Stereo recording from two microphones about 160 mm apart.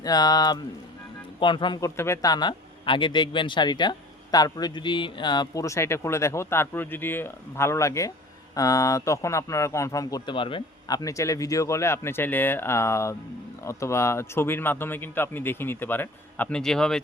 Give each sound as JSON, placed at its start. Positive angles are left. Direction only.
{"t": 0.0, "sound": "speech", "side_deg": 25}